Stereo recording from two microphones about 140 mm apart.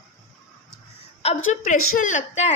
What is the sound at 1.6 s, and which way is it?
Speech, 65° left (ahead or behind).